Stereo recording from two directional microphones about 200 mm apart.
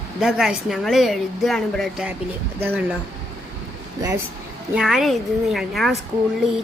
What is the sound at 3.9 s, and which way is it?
Speech, 15° right (ahead or behind).